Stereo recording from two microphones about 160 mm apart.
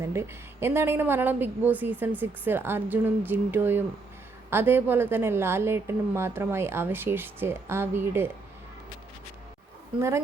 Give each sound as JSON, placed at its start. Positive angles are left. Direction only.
{"t": 0.0, "sound": "a woman's voice", "side_deg": -15}